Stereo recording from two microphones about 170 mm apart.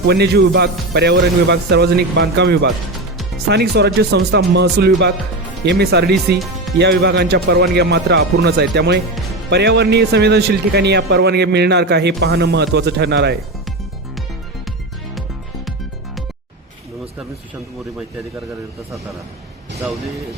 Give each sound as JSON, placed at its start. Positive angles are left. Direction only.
{"t": 0.1, "sound": "a man's voice", "side_deg": -75}
{"t": 6.7, "sound": "a man's voice", "side_deg": -85}